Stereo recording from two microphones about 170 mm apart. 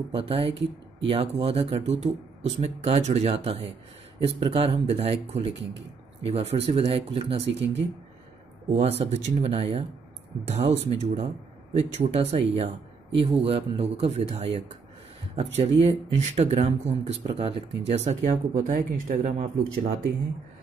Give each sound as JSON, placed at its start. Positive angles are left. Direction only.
{"t": 0.1, "sound": "speech", "side_deg": -35}
{"t": 8.7, "sound": "speech", "side_deg": -40}